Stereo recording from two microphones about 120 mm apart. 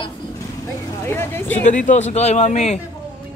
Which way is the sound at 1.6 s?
90° left.